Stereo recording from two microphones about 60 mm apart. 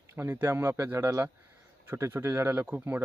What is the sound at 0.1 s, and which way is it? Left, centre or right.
Speech, right.